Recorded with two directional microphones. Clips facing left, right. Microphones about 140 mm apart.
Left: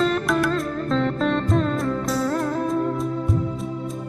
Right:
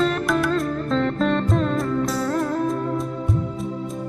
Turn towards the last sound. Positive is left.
turn(degrees=0)  # may be behind; listen again after turning